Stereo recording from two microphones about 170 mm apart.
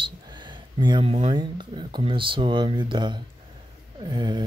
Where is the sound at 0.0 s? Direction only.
25° right (ahead or behind).